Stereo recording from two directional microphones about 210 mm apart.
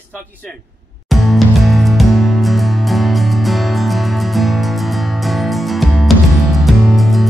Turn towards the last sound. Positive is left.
turn(degrees=0)  # may be behind; listen again after turning